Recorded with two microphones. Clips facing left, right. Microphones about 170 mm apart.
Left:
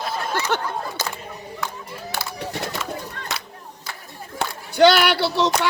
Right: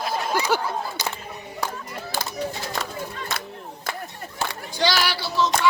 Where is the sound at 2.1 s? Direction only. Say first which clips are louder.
Right 1 dB; 65° left (ahead or behind).